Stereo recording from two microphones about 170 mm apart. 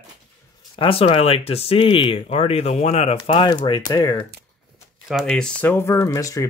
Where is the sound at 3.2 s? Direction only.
25° left (ahead or behind).